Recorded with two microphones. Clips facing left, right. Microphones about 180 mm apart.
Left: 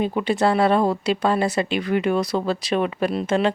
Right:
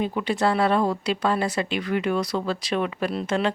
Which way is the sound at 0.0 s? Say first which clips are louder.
Left 3 dB; 25° left (ahead or behind).